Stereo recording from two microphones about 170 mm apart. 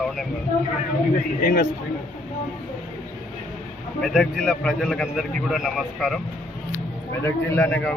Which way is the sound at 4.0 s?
Centre (ahead or behind).